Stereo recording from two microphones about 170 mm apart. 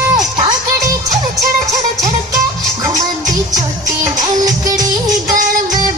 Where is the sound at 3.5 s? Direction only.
20° right (ahead or behind).